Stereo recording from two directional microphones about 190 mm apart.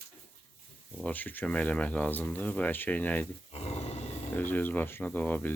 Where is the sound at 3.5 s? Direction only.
35° left (ahead or behind).